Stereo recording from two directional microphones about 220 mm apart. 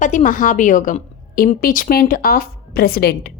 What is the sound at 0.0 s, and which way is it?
A woman's voice, 35° left (ahead or behind).